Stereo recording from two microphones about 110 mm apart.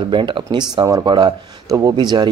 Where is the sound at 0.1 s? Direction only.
45° right (ahead or behind).